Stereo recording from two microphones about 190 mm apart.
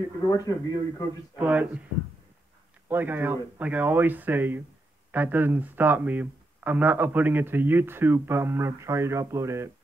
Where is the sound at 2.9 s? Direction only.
10° right (ahead or behind).